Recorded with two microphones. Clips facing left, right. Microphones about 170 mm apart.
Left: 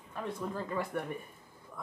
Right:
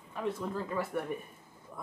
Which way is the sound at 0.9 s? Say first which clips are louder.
Right 1 dB; 5° right (ahead or behind).